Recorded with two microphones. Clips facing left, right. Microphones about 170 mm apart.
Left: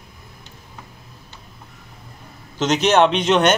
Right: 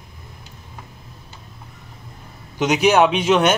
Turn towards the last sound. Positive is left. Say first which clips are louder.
# even
turn(degrees=-5)  # may be behind; listen again after turning